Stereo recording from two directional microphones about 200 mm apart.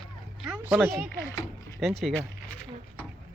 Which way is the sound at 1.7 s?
Centre (ahead or behind).